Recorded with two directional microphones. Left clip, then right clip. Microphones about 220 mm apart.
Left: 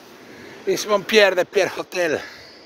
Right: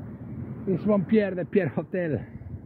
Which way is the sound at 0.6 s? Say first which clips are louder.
Left 6 dB; 45° left (ahead or behind).